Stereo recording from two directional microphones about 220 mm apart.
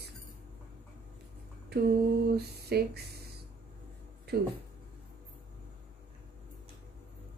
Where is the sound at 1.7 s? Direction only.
45° right (ahead or behind).